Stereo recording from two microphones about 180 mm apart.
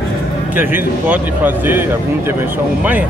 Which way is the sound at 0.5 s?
10° right (ahead or behind).